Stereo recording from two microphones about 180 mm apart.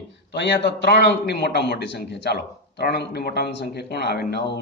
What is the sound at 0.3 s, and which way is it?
A man's voice, 70° left (ahead or behind).